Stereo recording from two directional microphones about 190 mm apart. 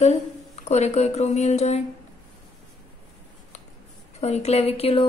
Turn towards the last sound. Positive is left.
turn(degrees=30)  # may be behind; listen again after turning